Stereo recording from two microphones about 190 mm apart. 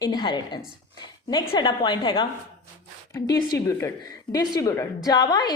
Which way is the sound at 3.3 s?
15° left (ahead or behind).